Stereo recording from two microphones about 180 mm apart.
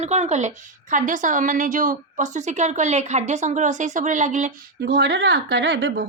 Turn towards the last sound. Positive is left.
turn(degrees=-80)